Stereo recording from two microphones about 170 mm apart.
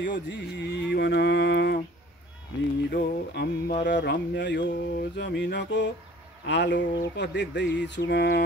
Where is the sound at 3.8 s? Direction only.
90° left.